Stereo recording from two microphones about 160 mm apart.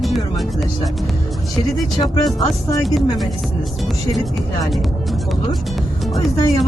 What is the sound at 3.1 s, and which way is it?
Speech, centre (ahead or behind).